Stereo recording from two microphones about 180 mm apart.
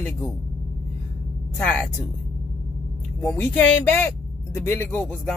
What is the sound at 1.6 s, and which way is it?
Speech, 5° left (ahead or behind).